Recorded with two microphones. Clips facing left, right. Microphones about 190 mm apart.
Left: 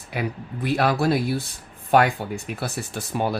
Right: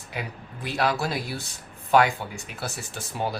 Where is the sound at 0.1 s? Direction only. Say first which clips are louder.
Left 7 dB; 60° left (ahead or behind).